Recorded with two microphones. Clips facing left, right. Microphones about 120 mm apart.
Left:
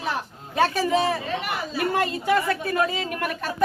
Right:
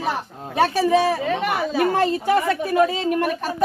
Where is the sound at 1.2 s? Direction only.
90° right.